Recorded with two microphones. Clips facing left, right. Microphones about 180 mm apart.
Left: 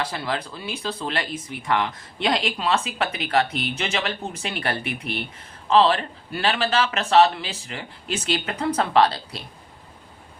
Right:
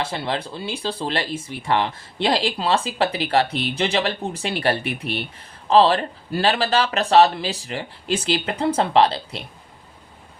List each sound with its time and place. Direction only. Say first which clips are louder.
0.0 s speech: right 2 dB; 25° right (ahead or behind)